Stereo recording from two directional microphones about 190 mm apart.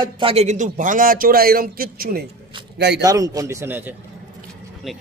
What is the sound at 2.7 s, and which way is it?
Speech, 60° right (ahead or behind).